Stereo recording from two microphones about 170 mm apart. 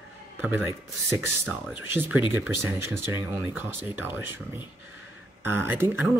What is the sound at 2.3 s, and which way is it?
Speech, 15° right (ahead or behind).